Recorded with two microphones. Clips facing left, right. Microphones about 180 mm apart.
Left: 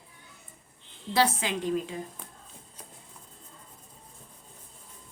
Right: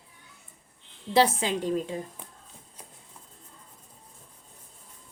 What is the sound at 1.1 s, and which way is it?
Speech, 30° right (ahead or behind).